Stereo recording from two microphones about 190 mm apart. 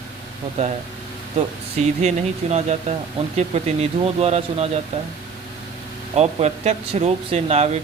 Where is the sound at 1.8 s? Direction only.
35° right (ahead or behind).